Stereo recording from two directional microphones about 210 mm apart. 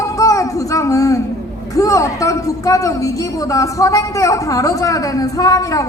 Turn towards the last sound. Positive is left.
turn(degrees=15)  # may be behind; listen again after turning